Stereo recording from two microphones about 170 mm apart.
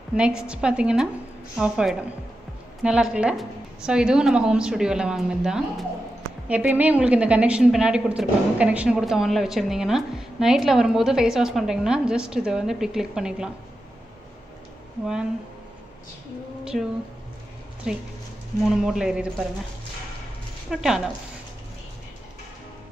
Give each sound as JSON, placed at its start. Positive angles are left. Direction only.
{"t": 0.4, "sound": "a woman's voice", "side_deg": -5}
{"t": 16.7, "sound": "speech", "side_deg": -55}
{"t": 17.9, "sound": "a woman's voice", "side_deg": -5}
{"t": 20.7, "sound": "a woman's voice", "side_deg": -5}